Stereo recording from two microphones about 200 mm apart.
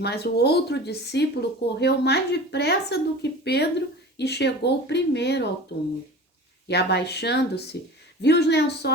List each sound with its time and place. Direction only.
0.0 s speech: 55° left (ahead or behind)
6.7 s speech: 55° left (ahead or behind)